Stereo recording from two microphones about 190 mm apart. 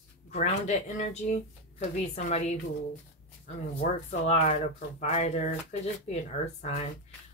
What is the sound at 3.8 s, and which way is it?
Speech, 40° left (ahead or behind).